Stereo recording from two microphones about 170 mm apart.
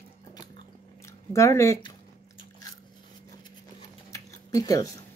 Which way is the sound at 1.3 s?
15° left (ahead or behind).